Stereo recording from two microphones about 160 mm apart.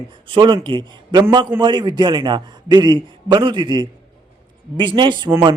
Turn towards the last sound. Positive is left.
turn(degrees=-15)  # may be behind; listen again after turning